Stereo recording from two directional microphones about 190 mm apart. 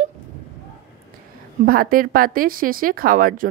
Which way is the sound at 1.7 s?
50° right (ahead or behind).